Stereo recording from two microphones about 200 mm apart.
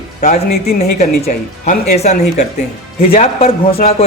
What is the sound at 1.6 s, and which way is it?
A man's voice, 35° left (ahead or behind).